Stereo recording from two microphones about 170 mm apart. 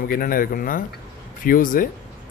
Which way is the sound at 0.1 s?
55° left (ahead or behind).